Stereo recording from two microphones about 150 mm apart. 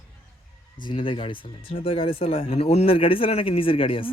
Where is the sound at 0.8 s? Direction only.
35° left (ahead or behind).